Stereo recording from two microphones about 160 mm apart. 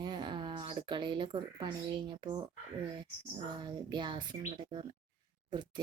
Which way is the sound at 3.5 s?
25° right (ahead or behind).